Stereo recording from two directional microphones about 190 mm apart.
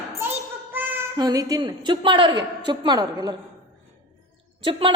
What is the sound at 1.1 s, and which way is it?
A woman's voice, 20° right (ahead or behind).